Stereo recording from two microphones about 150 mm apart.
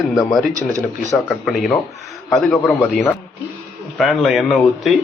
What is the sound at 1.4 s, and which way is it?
Speech, centre (ahead or behind).